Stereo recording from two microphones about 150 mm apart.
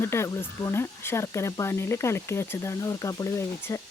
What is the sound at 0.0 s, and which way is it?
Speech, 15° left (ahead or behind).